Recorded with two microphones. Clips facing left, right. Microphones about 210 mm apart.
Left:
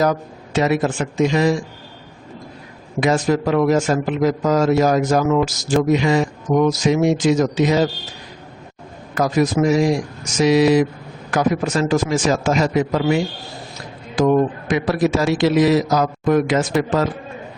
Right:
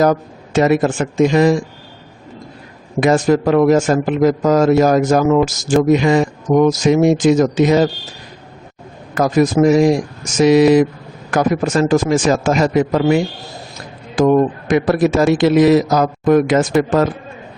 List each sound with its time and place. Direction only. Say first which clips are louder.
0.0 s a man's voice: right 4 dB; 50° right (ahead or behind)
3.0 s a man's voice: right 4 dB; 50° right (ahead or behind)
9.1 s a man's voice: right 4 dB; 45° right (ahead or behind)
14.2 s a man's voice: right 3 dB; 50° right (ahead or behind)